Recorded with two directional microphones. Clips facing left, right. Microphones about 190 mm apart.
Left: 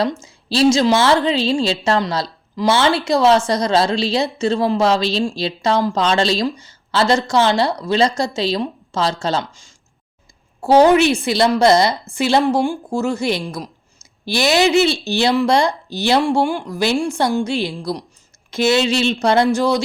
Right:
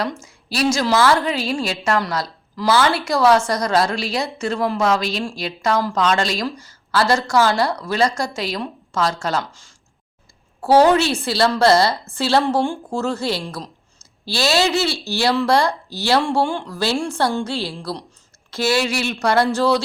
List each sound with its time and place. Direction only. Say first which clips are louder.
0.0 s a woman's voice: left 5 dB; 25° left (ahead or behind)